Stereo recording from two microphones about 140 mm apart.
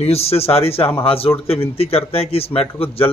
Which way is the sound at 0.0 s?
45° left (ahead or behind).